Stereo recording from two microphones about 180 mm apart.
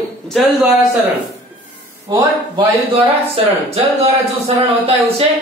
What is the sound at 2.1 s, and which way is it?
Speech, 30° right (ahead or behind).